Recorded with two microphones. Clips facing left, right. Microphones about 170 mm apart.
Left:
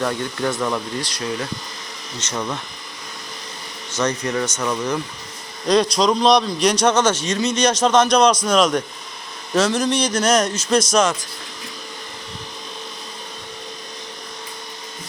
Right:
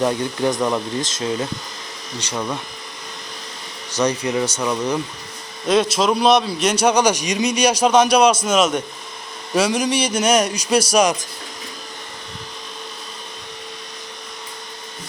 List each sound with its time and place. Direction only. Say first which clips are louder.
0.0 s speech: right 3 dB; 20° right (ahead or behind)
2.1 s a man's voice: right 1 dB; 10° right (ahead or behind)
3.9 s a man's voice: right 2 dB; 15° right (ahead or behind)